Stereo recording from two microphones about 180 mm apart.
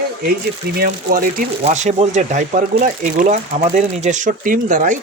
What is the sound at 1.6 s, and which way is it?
Speech, 40° right (ahead or behind).